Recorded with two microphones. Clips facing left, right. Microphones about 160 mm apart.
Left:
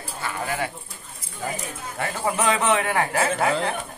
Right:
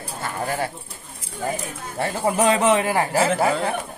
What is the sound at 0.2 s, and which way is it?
Speech, 40° right (ahead or behind).